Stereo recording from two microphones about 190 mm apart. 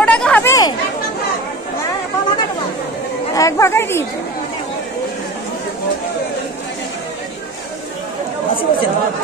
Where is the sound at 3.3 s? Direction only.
15° left (ahead or behind).